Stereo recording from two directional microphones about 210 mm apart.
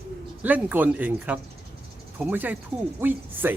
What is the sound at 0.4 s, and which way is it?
Speech, 10° right (ahead or behind).